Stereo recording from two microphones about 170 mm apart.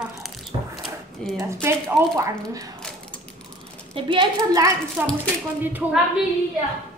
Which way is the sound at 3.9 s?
30° right (ahead or behind).